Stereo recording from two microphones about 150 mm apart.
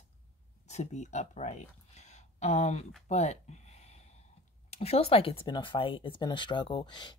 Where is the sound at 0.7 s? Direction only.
50° left (ahead or behind).